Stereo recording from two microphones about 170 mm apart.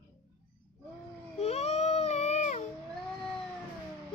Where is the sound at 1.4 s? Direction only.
40° left (ahead or behind).